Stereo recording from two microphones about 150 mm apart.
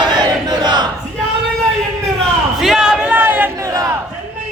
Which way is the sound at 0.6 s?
30° right (ahead or behind).